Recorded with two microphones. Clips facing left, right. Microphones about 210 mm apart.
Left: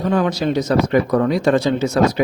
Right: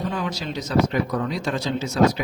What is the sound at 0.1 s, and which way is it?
A man's voice, 60° left (ahead or behind).